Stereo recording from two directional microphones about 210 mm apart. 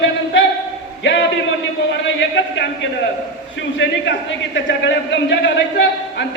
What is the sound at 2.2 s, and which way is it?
Speech, 60° left (ahead or behind).